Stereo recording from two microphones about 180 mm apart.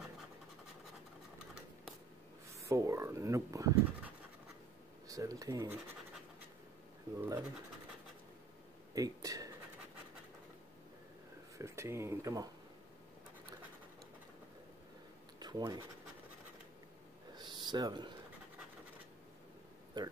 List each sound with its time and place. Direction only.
2.5 s speech: 15° right (ahead or behind)
7.2 s speech: 10° right (ahead or behind)
8.9 s speech: 20° right (ahead or behind)
11.5 s speech: 15° right (ahead or behind)
15.3 s writing: 25° right (ahead or behind)
17.4 s a sound: 25° right (ahead or behind)
20.0 s speech: 25° right (ahead or behind)